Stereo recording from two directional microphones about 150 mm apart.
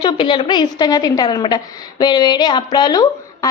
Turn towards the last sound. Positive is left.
turn(degrees=25)  # may be behind; listen again after turning